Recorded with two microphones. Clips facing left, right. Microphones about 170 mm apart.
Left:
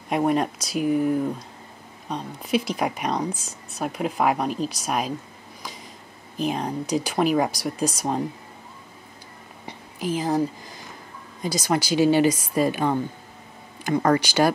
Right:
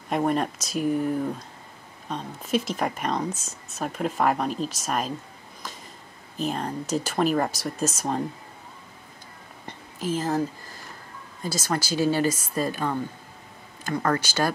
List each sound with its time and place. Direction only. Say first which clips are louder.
0.1 s speech: left 2 dB; 10° left (ahead or behind)
6.3 s speech: left 3 dB; 10° left (ahead or behind)
9.7 s a sound: left 1 dB; 15° left (ahead or behind)
11.4 s speech: left 4 dB; 15° left (ahead or behind)